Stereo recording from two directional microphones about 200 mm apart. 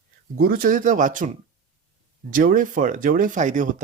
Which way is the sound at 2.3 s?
45° right (ahead or behind).